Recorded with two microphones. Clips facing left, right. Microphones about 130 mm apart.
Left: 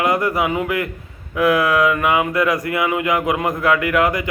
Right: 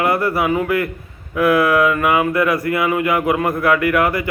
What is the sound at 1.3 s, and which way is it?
Speech, 15° left (ahead or behind).